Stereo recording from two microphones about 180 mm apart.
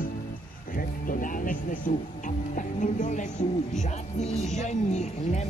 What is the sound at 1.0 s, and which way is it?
Speech, 50° left (ahead or behind).